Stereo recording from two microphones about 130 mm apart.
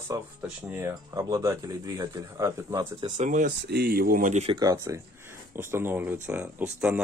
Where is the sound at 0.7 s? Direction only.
20° right (ahead or behind).